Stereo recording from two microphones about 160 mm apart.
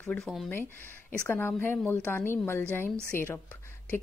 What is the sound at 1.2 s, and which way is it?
A woman's voice, 10° left (ahead or behind).